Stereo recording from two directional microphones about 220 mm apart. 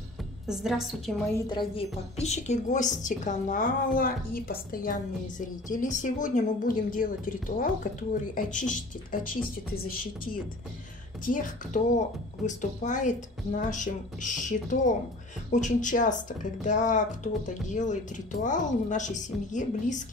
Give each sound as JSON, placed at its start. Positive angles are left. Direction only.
{"t": 0.5, "sound": "a woman's voice", "side_deg": 0}
{"t": 1.3, "sound": "speech", "side_deg": 20}